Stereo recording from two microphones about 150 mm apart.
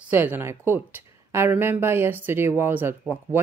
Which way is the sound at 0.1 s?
10° right (ahead or behind).